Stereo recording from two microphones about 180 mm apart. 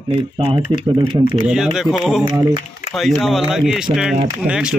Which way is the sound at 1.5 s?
5° right (ahead or behind).